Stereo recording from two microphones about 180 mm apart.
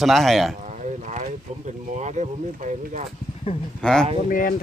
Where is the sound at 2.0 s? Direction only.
40° right (ahead or behind).